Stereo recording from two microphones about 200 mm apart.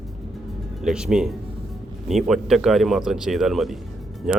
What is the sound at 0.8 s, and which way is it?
Speech, 5° right (ahead or behind).